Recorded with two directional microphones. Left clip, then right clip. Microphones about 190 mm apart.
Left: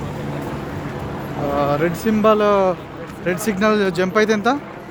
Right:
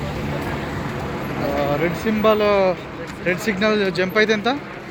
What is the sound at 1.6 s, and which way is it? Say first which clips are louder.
Speech: left 3 dB; 30° left (ahead or behind).